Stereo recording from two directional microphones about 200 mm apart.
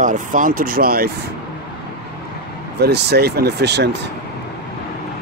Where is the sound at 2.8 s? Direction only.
55° right (ahead or behind).